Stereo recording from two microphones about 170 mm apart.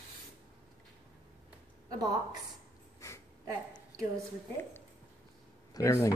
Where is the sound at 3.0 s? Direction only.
15° left (ahead or behind).